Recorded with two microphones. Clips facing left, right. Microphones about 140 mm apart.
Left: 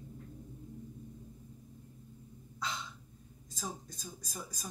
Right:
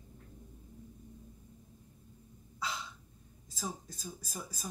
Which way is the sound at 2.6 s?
5° right (ahead or behind).